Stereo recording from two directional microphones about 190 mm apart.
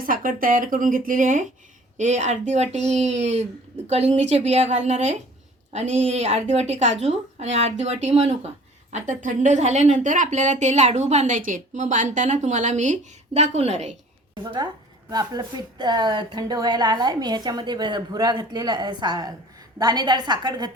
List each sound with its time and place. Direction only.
0.0 s a woman's voice: 45° right (ahead or behind)
15.1 s a woman's voice: 20° right (ahead or behind)